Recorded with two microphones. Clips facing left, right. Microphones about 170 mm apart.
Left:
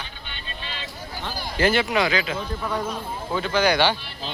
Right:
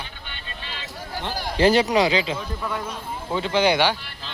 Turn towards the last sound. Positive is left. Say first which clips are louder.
# right 1 dB
turn(degrees=-25)  # may be behind; listen again after turning